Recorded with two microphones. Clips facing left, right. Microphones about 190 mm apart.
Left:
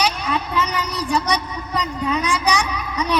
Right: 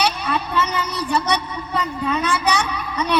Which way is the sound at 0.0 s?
15° left (ahead or behind).